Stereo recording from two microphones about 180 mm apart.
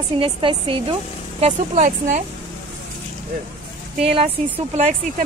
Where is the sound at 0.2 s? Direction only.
30° right (ahead or behind).